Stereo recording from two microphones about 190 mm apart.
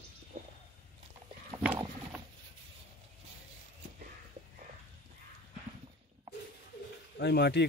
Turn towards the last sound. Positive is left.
turn(degrees=60)  # may be behind; listen again after turning